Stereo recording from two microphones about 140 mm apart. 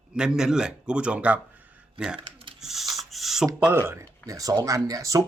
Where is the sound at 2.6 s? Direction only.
Centre (ahead or behind).